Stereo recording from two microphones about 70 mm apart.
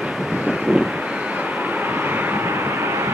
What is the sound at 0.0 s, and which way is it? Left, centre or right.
Vehicle, centre.